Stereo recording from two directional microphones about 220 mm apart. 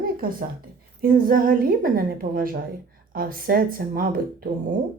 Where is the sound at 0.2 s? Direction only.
40° right (ahead or behind).